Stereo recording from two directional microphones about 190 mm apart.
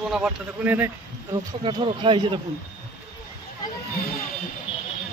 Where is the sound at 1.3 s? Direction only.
25° right (ahead or behind).